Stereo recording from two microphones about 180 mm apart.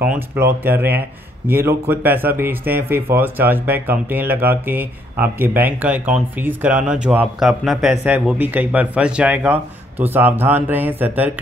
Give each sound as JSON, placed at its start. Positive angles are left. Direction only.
{"t": 0.1, "sound": "speech", "side_deg": -10}